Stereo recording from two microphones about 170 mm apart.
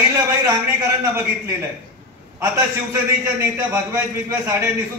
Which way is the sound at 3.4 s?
15° right (ahead or behind).